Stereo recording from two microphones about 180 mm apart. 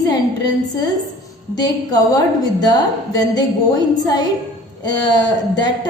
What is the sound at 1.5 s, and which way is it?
A woman's voice, 20° left (ahead or behind).